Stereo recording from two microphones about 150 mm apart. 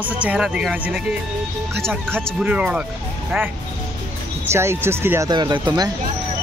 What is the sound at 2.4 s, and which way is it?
Speech, 5° right (ahead or behind).